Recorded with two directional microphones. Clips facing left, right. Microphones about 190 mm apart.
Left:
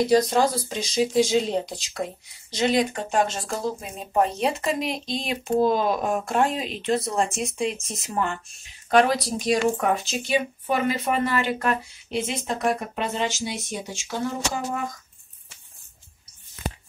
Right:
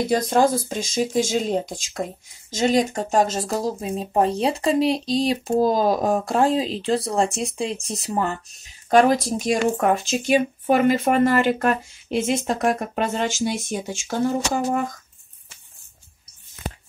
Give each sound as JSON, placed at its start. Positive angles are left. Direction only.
{"t": 0.1, "sound": "speech", "side_deg": -50}